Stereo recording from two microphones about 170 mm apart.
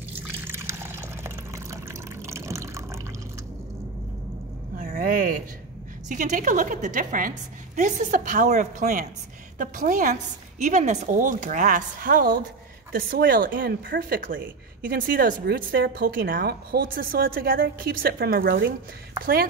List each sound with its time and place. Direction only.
0.4 s water: 15° right (ahead or behind)
4.7 s a sound: 55° right (ahead or behind)
6.0 s a woman's voice: 45° right (ahead or behind)